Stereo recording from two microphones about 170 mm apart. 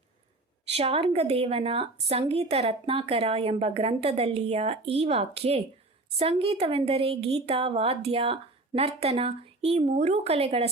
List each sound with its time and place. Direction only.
0.7 s a woman's voice: 35° right (ahead or behind)